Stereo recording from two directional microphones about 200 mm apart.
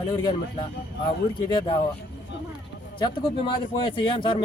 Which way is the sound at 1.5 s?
25° left (ahead or behind).